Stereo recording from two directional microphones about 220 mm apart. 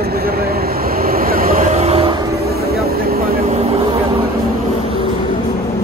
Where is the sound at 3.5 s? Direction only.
25° right (ahead or behind).